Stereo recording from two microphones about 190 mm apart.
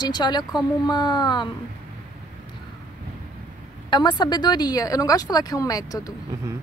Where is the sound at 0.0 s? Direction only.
20° left (ahead or behind).